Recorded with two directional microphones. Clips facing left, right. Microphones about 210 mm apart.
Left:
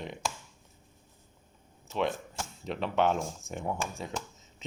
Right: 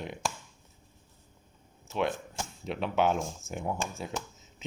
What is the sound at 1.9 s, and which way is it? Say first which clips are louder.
Speech: even; 5° right (ahead or behind).